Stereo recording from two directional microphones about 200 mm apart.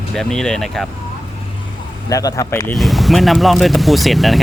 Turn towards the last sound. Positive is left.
turn(degrees=0)  # may be behind; listen again after turning